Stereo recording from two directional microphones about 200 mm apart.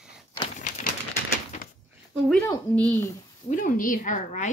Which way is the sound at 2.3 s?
10° left (ahead or behind).